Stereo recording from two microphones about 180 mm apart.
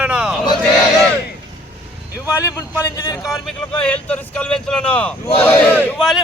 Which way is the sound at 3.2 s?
Centre (ahead or behind).